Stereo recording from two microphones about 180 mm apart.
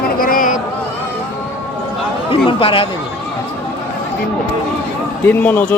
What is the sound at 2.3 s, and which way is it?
Speech, 30° left (ahead or behind).